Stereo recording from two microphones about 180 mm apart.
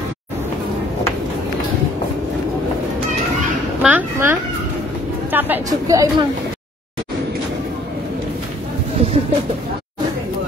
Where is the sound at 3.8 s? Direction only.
10° right (ahead or behind).